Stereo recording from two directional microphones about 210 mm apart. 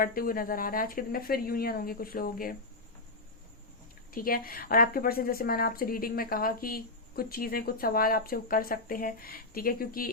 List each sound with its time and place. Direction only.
0.0 s a woman's voice: 40° left (ahead or behind)
4.1 s a woman's voice: 40° left (ahead or behind)